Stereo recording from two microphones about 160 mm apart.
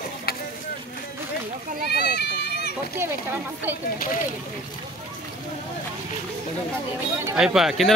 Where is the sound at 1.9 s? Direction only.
90° left.